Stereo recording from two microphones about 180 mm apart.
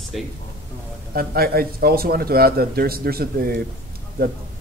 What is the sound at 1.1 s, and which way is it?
Speech, 55° right (ahead or behind).